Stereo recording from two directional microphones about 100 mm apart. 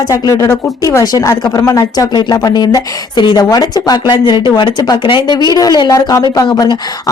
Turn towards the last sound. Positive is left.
turn(degrees=35)  # may be behind; listen again after turning